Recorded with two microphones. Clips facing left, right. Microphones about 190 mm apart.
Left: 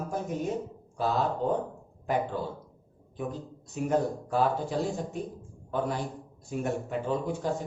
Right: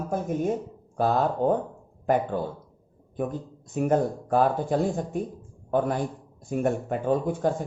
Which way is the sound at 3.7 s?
55° right (ahead or behind).